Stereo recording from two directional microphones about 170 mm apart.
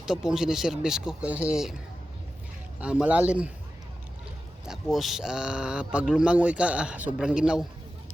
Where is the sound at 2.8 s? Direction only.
5° right (ahead or behind).